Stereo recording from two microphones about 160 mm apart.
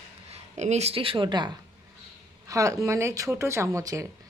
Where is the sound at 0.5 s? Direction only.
45° right (ahead or behind).